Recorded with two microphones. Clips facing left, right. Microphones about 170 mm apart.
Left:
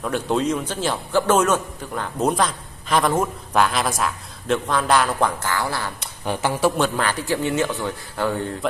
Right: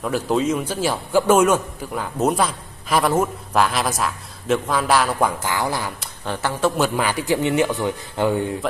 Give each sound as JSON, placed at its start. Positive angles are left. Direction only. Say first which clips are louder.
{"t": 0.0, "sound": "a man's voice", "louder": "right 1 dB", "side_deg": -5}
{"t": 5.4, "sound": "a man's voice", "louder": "right 2 dB", "side_deg": -15}
{"t": 6.2, "sound": "speech", "louder": "left 1 dB", "side_deg": 15}
{"t": 6.8, "sound": "a man's voice", "louder": "right 1 dB", "side_deg": -10}